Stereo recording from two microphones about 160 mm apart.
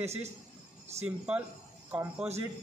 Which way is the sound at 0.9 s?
40° right (ahead or behind).